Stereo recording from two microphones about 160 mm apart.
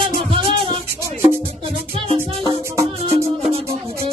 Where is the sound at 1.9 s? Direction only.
35° right (ahead or behind).